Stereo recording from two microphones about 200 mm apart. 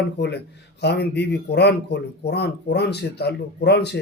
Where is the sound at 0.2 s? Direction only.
55° left (ahead or behind).